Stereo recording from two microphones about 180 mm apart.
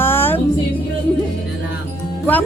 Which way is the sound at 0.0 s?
10° left (ahead or behind).